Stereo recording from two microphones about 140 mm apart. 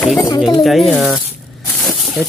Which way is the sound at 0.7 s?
Centre (ahead or behind).